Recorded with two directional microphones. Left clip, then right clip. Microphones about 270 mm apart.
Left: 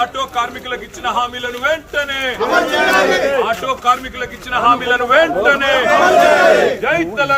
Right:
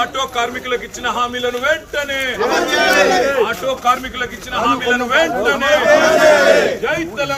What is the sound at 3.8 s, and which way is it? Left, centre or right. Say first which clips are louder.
Speech: even; centre.